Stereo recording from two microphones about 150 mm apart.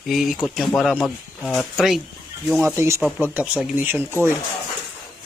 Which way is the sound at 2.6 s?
15° right (ahead or behind).